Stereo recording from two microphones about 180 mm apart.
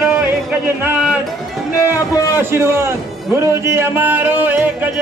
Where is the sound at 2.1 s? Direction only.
20° left (ahead or behind).